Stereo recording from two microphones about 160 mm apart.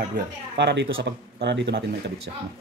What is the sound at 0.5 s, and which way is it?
Speech, 90° right.